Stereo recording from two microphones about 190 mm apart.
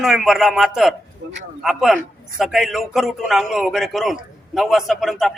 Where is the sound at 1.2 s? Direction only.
70° right (ahead or behind).